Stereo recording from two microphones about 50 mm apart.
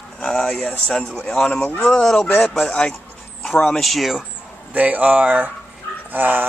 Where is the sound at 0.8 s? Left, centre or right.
Centre.